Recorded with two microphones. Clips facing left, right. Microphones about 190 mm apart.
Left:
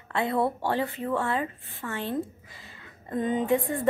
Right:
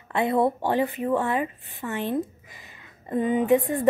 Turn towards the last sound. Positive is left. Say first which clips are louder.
# right 4 dB
turn(degrees=-20)  # may be behind; listen again after turning